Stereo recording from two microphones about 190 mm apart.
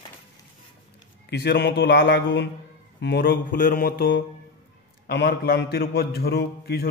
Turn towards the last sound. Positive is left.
turn(degrees=55)  # may be behind; listen again after turning